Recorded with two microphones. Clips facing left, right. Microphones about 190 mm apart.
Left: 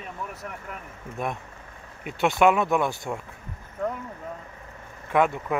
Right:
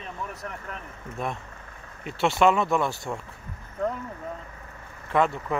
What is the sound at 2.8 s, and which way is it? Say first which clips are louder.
Speech: left 1 dB; 20° left (ahead or behind).